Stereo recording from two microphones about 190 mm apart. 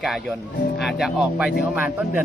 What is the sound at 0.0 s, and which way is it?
Speech, centre (ahead or behind).